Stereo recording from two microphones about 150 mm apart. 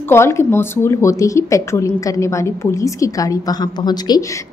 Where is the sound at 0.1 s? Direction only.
15° left (ahead or behind).